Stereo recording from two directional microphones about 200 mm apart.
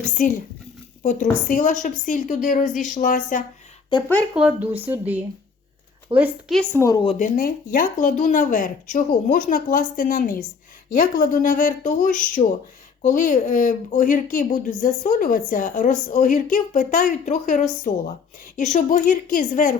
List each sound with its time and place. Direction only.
0.2 s a child's voice: 45° left (ahead or behind)
1.5 s speech: 40° left (ahead or behind)
3.9 s speech: 25° left (ahead or behind)
4.4 s a woman's voice: 5° right (ahead or behind)
6.6 s speech: 15° left (ahead or behind)
7.2 s speech: 45° left (ahead or behind)